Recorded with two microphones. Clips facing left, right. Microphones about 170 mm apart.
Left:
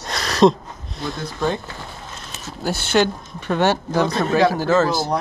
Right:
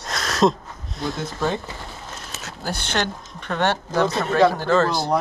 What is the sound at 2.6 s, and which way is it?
Speech, 5° left (ahead or behind).